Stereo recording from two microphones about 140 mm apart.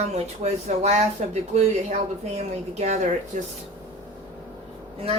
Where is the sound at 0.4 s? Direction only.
50° right (ahead or behind).